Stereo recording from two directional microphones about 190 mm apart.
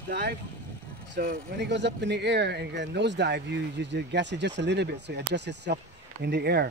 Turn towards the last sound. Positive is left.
turn(degrees=-60)  # may be behind; listen again after turning